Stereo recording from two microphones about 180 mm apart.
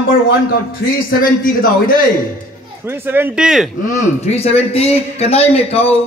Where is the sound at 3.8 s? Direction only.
40° left (ahead or behind).